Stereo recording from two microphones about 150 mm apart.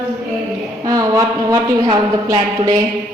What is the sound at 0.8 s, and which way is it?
A woman's voice, 25° right (ahead or behind).